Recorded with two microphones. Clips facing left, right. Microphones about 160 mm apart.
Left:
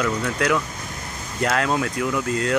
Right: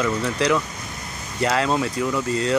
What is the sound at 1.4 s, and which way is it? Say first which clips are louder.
Speech: right 1 dB; centre (ahead or behind).